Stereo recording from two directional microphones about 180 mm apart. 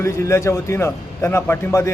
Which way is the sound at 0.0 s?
15° left (ahead or behind).